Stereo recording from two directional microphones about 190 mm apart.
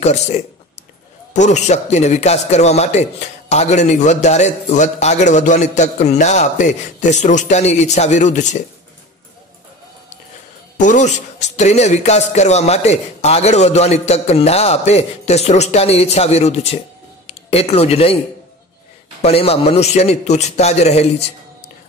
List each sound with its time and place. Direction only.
0.0 s speech: 35° left (ahead or behind)
10.8 s speech: 40° left (ahead or behind)
19.2 s speech: 30° left (ahead or behind)